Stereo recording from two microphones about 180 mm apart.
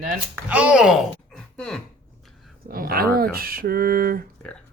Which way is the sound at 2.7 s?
55° right (ahead or behind).